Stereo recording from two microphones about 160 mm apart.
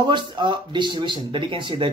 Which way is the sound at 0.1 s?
30° right (ahead or behind).